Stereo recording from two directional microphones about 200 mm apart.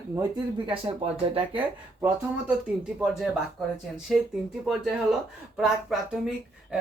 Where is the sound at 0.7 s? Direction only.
30° right (ahead or behind).